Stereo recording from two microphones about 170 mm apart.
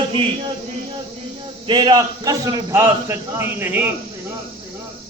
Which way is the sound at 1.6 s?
25° right (ahead or behind).